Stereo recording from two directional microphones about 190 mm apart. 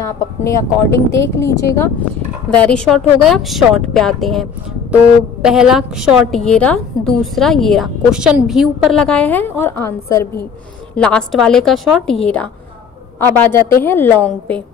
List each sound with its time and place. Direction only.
0.0 s speech: 15° left (ahead or behind)
2.5 s a woman's voice: 5° left (ahead or behind)
11.0 s a woman's voice: 5° left (ahead or behind)
13.2 s speech: 10° left (ahead or behind)